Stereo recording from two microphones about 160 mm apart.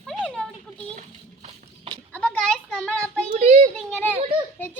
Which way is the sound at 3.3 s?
50° right (ahead or behind).